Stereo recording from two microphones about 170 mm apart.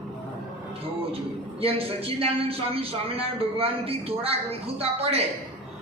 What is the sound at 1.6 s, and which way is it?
A man's voice, 35° right (ahead or behind).